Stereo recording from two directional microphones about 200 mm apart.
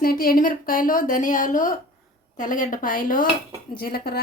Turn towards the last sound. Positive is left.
turn(degrees=50)  # may be behind; listen again after turning